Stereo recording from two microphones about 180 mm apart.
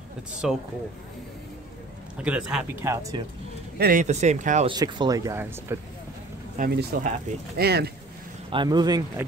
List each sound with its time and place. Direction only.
0.4 s speech: 5° right (ahead or behind)
2.2 s speech: 5° right (ahead or behind)
3.7 s a man's voice: 60° right (ahead or behind)
4.0 s speech: 40° right (ahead or behind)
4.6 s speech: 25° right (ahead or behind)
6.6 s speech: 50° right (ahead or behind)
7.5 s speech: 60° right (ahead or behind)
8.5 s speech: 25° right (ahead or behind)